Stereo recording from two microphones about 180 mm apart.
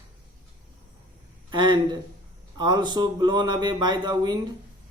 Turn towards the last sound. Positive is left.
turn(degrees=-25)  # may be behind; listen again after turning